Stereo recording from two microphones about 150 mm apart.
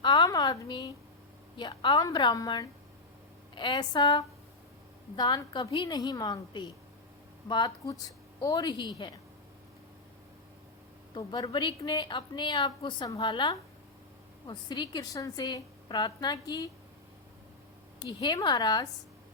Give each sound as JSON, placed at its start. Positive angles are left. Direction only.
{"t": 0.0, "sound": "a sound", "side_deg": 30}
{"t": 1.5, "sound": "a woman's voice", "side_deg": 30}
{"t": 11.1, "sound": "a woman's voice", "side_deg": 25}
{"t": 18.0, "sound": "a woman's voice", "side_deg": 25}